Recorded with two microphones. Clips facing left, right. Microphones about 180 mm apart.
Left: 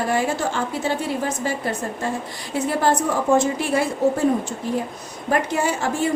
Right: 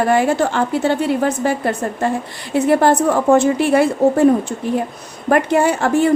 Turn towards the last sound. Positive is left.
turn(degrees=-60)  # may be behind; listen again after turning